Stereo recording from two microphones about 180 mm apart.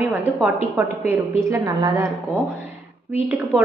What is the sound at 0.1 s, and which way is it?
A woman's voice, 10° right (ahead or behind).